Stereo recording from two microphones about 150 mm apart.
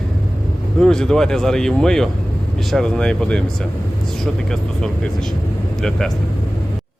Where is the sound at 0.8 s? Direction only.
5° left (ahead or behind).